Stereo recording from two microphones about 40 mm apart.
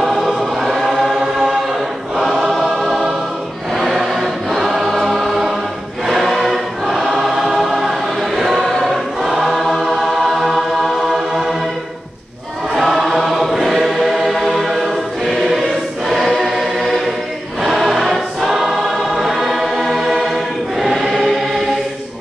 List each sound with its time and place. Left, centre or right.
0.0 s choir: centre
9.5 s choir: centre
9.8 s music: centre
12.7 s choir: centre